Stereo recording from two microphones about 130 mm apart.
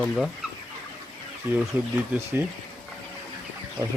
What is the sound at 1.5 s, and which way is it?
Speech, 15° right (ahead or behind).